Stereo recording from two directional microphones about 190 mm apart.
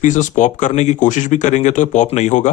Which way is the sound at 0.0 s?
40° left (ahead or behind).